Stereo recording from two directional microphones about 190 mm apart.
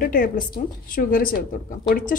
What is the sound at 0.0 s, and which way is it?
A woman's voice, 45° left (ahead or behind).